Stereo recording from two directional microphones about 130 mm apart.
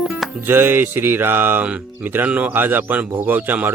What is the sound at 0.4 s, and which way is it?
Speech, 15° right (ahead or behind).